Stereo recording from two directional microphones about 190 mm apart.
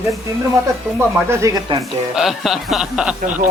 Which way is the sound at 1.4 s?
15° right (ahead or behind).